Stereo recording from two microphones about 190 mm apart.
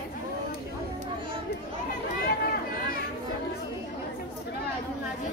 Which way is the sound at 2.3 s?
50° left (ahead or behind).